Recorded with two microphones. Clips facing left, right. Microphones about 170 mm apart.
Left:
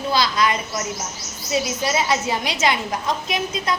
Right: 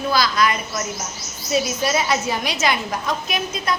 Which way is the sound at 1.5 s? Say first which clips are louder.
Right 2 dB; 20° left (ahead or behind).